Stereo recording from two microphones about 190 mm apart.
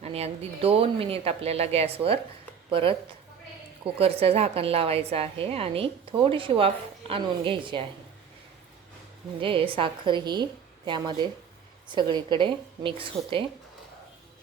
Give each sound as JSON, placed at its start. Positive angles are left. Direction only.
{"t": 0.0, "sound": "speech", "side_deg": -30}
{"t": 3.9, "sound": "a woman's voice", "side_deg": -30}
{"t": 9.4, "sound": "a woman's voice", "side_deg": -30}